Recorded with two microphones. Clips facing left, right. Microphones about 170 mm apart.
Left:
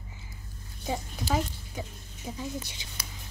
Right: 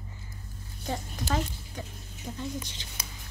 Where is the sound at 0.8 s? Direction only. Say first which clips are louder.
Left 1 dB; 10° left (ahead or behind).